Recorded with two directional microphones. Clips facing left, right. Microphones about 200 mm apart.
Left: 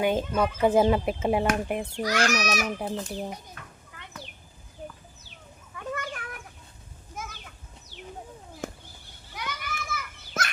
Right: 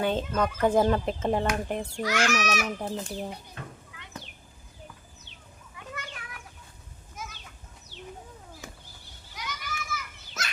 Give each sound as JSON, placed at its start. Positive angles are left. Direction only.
{"t": 0.0, "sound": "speech", "side_deg": 10}
{"t": 2.0, "sound": "a child's voice", "side_deg": 35}
{"t": 2.9, "sound": "speech", "side_deg": 0}
{"t": 3.6, "sound": "children playing", "side_deg": -25}
{"t": 5.7, "sound": "a sound", "side_deg": 50}
{"t": 8.6, "sound": "a sound", "side_deg": 55}
{"t": 9.3, "sound": "children playing", "side_deg": 55}